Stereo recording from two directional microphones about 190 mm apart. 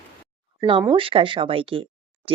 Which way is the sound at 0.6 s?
25° right (ahead or behind).